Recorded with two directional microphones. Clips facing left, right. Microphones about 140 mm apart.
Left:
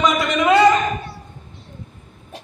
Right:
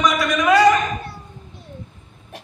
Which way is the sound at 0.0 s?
25° left (ahead or behind).